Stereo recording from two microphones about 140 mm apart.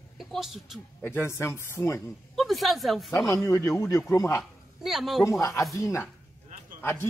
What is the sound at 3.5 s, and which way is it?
Speech, 20° left (ahead or behind).